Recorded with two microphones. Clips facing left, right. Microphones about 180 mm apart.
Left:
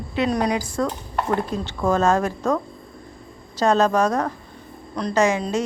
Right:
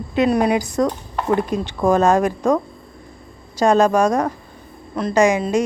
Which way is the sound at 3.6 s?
10° right (ahead or behind).